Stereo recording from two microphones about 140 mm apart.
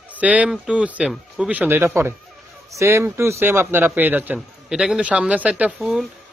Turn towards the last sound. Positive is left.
turn(degrees=-5)  # may be behind; listen again after turning